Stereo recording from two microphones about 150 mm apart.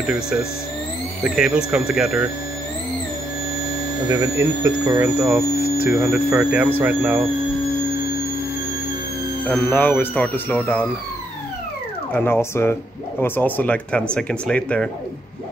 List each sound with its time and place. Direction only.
0.0 s speech: 5° right (ahead or behind)
4.1 s speech: 20° right (ahead or behind)
9.5 s speech: 10° left (ahead or behind)
12.1 s speech: 15° left (ahead or behind)